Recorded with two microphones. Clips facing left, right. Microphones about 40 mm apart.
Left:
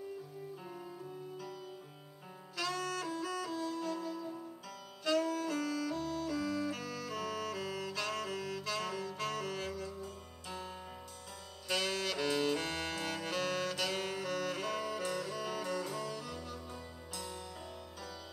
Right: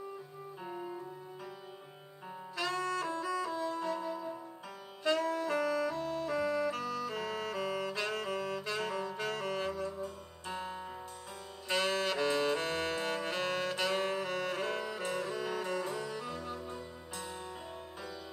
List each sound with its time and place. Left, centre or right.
0.7 s music: right
2.5 s saxophone: right
6.8 s music: centre
7.1 s saxophone: right